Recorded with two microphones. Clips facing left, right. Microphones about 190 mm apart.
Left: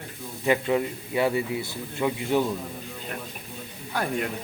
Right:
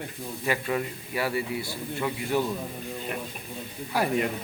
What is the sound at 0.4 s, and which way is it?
A man's voice, 20° left (ahead or behind).